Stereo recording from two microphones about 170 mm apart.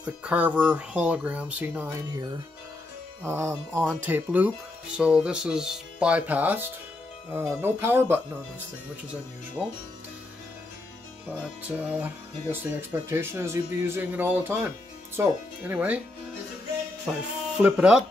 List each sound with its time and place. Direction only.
0.0 s speech: 5° right (ahead or behind)
3.3 s speech: 15° right (ahead or behind)
9.6 s speech: 5° right (ahead or behind)
11.6 s speech: 10° right (ahead or behind)
17.6 s speech: 5° right (ahead or behind)